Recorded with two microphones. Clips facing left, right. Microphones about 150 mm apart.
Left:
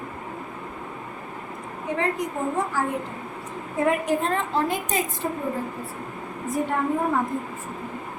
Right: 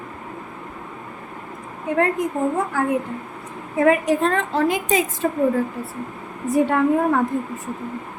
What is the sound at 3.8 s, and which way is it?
A woman's voice, 85° right.